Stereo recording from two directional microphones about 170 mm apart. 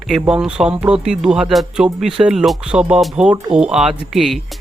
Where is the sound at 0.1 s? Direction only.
5° right (ahead or behind).